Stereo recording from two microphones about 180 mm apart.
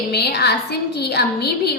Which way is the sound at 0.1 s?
65° left (ahead or behind).